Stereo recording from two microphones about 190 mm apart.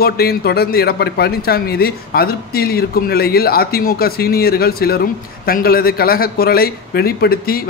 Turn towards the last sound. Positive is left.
turn(degrees=55)  # may be behind; listen again after turning